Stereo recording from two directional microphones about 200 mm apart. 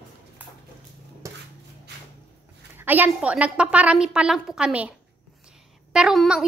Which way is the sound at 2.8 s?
10° right (ahead or behind).